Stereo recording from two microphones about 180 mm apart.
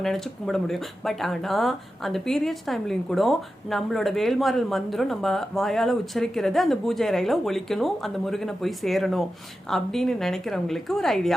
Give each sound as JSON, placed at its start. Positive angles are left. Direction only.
{"t": 0.0, "sound": "speech", "side_deg": 0}